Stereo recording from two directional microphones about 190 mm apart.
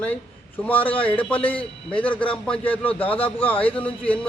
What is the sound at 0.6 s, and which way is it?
A man's voice, 10° left (ahead or behind).